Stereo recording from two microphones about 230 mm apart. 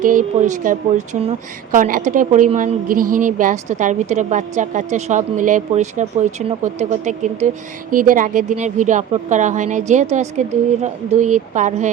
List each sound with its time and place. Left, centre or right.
0.0 s speech: right